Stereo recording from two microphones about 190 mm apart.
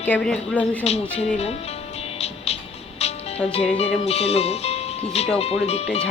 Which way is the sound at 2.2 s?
35° left (ahead or behind).